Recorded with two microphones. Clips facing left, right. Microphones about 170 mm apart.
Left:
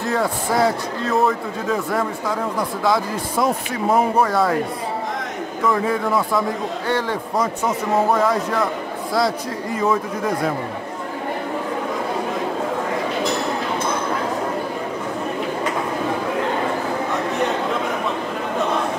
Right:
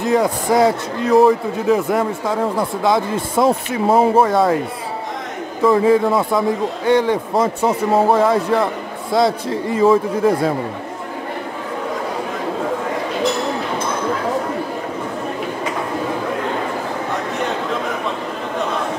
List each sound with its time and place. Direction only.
0.0 s a man's voice: 15° right (ahead or behind)
5.7 s a man's voice: 25° right (ahead or behind)
7.6 s speech: 30° right (ahead or behind)